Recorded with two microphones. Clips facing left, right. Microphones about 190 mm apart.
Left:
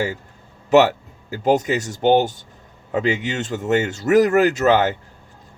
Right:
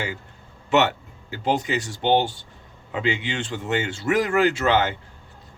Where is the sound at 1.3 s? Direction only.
40° left (ahead or behind).